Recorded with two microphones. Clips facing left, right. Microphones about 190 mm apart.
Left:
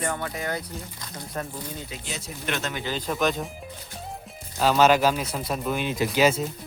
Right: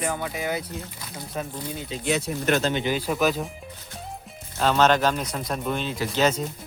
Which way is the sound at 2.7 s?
15° right (ahead or behind).